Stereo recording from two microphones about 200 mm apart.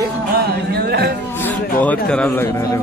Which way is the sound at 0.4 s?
50° right (ahead or behind).